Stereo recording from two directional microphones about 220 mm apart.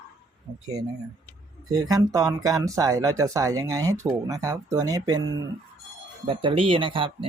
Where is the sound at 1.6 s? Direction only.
15° right (ahead or behind).